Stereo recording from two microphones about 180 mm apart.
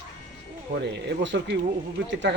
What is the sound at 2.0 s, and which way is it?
Speech, 90° right.